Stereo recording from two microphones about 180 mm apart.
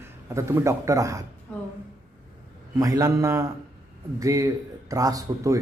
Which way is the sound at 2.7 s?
20° right (ahead or behind).